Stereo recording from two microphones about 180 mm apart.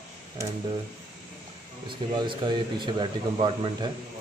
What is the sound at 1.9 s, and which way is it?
Speech, 25° right (ahead or behind).